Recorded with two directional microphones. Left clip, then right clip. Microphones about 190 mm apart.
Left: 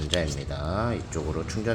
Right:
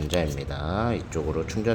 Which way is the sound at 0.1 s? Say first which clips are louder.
Right 1 dB; 20° right (ahead or behind).